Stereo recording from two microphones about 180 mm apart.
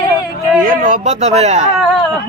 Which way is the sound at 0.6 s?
45° right (ahead or behind).